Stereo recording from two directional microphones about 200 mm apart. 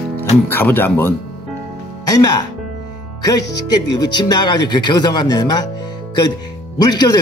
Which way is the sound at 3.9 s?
20° left (ahead or behind).